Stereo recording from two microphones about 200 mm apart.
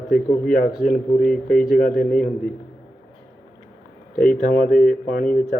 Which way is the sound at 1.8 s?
45° left (ahead or behind).